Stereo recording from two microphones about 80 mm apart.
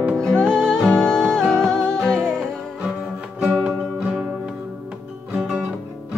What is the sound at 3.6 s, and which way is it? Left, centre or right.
Music, centre.